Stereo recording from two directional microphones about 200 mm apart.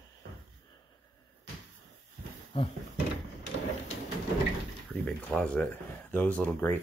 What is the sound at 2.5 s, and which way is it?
Speech, 25° left (ahead or behind).